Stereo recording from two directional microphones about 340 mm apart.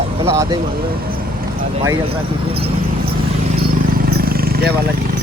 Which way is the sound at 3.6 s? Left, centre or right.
Right.